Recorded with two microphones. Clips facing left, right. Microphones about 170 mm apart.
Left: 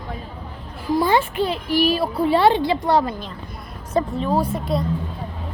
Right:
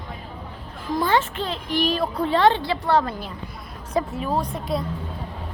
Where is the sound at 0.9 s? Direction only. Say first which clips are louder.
Left 3 dB; 10° left (ahead or behind).